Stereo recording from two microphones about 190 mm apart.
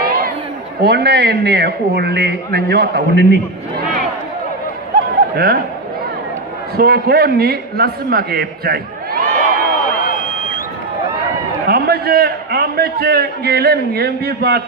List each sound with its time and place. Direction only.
0.0 s a sound: 50° right (ahead or behind)
0.8 s a man's voice: 60° right (ahead or behind)
5.3 s speech: 55° right (ahead or behind)
6.8 s a man's voice: 55° right (ahead or behind)
9.9 s a sound: 45° left (ahead or behind)
11.6 s a man's voice: 55° right (ahead or behind)